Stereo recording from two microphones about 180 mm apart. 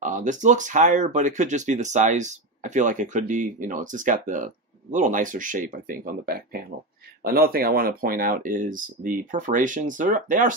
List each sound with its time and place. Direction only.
0.0 s speech: 45° right (ahead or behind)